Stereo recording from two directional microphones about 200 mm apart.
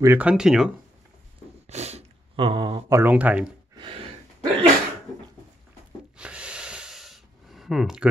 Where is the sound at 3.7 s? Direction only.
25° right (ahead or behind).